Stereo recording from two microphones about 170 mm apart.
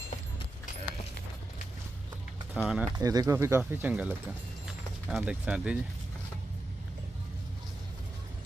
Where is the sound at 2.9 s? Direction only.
20° right (ahead or behind); by 5.7 s 5° right (ahead or behind).